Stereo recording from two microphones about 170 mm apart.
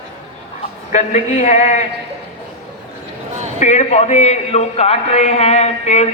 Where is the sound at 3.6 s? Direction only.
40° left (ahead or behind).